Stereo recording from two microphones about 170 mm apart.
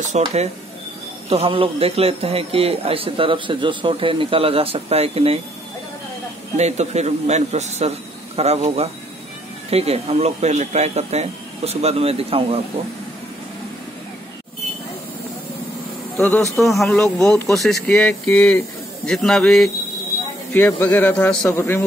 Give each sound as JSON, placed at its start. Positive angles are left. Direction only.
{"t": 0.1, "sound": "a man's voice", "side_deg": -40}
{"t": 6.5, "sound": "a man's voice", "side_deg": -40}
{"t": 16.2, "sound": "speech", "side_deg": 5}